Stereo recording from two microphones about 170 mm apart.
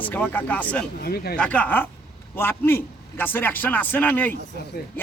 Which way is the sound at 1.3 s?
5° left (ahead or behind).